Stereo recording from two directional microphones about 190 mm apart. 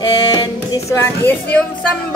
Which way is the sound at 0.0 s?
20° left (ahead or behind).